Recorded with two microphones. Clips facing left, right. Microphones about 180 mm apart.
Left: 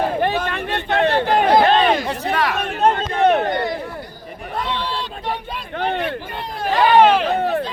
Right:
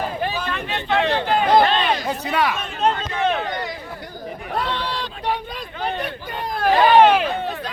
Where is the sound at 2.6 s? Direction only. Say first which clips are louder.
Left 4 dB; 55° left (ahead or behind).